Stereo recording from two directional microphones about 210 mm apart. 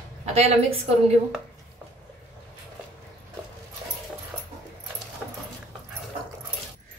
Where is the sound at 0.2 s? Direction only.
30° right (ahead or behind).